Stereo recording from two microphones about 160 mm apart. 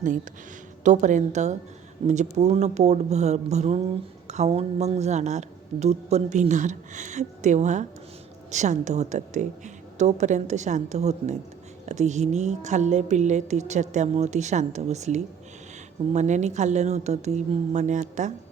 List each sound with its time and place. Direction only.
0.9 s speech: 50° right (ahead or behind)